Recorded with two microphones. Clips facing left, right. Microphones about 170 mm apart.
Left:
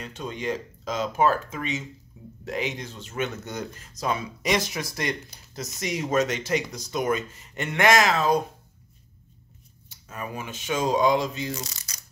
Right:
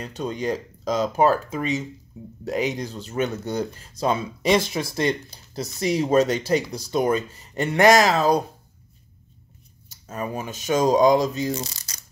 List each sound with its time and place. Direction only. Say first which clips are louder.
0.0 s speech: right 4 dB; 35° right (ahead or behind)
9.8 s speech: right 6 dB; 40° right (ahead or behind)
11.5 s coin: right 5 dB; 30° right (ahead or behind)